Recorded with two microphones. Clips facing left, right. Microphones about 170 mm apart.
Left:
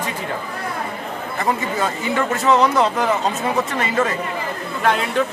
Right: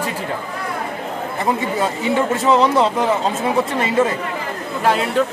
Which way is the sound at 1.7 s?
30° right (ahead or behind).